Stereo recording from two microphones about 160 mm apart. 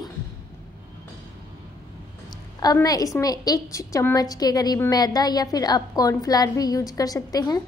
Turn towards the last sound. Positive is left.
turn(degrees=25)  # may be behind; listen again after turning